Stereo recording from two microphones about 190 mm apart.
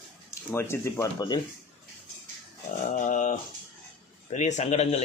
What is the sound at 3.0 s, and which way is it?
A man's voice, 40° left (ahead or behind).